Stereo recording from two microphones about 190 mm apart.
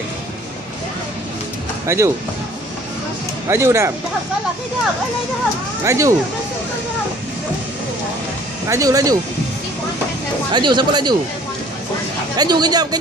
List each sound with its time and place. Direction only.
1.9 s speech: 15° right (ahead or behind)
3.4 s speech: 15° right (ahead or behind)
5.9 s speech: 15° right (ahead or behind)
8.6 s speech: 15° right (ahead or behind)
10.5 s speech: 25° right (ahead or behind)
12.4 s speech: 20° right (ahead or behind)